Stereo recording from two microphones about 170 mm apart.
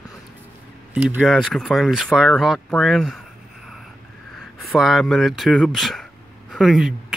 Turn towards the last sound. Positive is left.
turn(degrees=0)  # may be behind; listen again after turning